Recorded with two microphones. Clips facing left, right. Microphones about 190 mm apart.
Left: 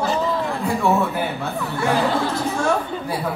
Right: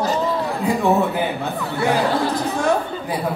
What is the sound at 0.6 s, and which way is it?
Speech, 15° right (ahead or behind).